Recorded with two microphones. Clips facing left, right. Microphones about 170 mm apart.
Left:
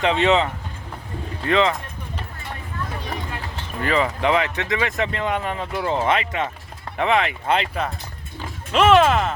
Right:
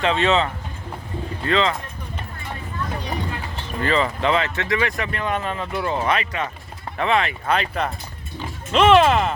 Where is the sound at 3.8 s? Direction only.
10° left (ahead or behind).